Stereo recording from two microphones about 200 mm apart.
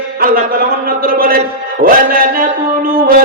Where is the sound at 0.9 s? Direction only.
45° right (ahead or behind).